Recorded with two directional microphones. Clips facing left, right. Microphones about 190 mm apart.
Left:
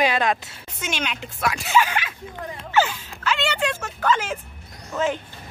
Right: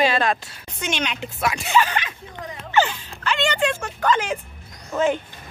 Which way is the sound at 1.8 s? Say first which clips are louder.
Even; 10° left (ahead or behind).